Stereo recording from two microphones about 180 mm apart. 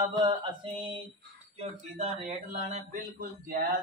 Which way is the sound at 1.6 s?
35° right (ahead or behind).